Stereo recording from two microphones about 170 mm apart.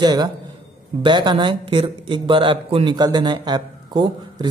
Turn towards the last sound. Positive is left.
turn(degrees=-25)  # may be behind; listen again after turning